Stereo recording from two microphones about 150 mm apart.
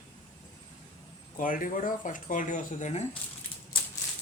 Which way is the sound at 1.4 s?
65° left (ahead or behind).